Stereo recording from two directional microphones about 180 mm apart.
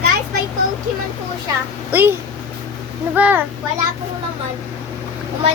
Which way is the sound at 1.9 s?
10° right (ahead or behind).